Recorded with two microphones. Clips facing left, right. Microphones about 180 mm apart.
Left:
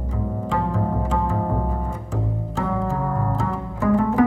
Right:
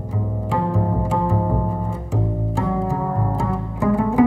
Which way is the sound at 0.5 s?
10° right (ahead or behind).